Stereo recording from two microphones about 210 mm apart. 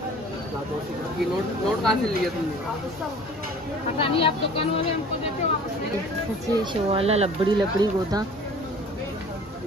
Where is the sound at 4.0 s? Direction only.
25° left (ahead or behind).